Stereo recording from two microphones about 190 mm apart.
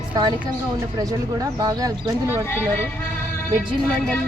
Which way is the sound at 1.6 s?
20° right (ahead or behind).